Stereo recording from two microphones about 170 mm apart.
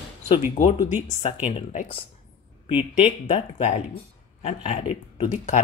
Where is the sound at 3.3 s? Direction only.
35° left (ahead or behind).